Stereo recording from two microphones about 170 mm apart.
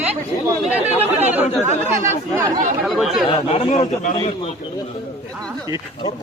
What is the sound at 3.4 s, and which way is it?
Speech, 35° left (ahead or behind).